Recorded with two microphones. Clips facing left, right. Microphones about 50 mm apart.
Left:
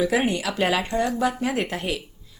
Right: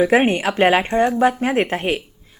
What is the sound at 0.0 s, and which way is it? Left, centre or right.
Speech, right.